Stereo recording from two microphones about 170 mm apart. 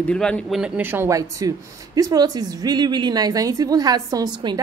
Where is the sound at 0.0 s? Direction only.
5° left (ahead or behind).